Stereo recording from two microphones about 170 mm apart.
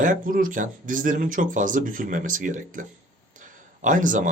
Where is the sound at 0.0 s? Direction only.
55° right (ahead or behind).